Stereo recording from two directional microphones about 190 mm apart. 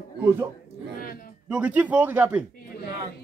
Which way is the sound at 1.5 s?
5° right (ahead or behind).